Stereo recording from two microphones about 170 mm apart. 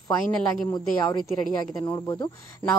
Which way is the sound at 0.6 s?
20° left (ahead or behind).